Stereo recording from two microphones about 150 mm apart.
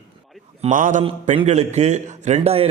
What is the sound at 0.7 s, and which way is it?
Mantra, 60° right (ahead or behind).